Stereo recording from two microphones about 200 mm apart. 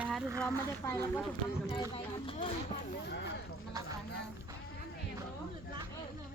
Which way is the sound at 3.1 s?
60° left (ahead or behind).